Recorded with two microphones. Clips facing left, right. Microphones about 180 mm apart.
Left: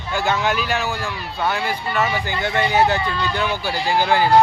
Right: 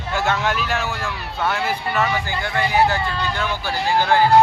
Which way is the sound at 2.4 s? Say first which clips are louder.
Left 1 dB; 25° left (ahead or behind).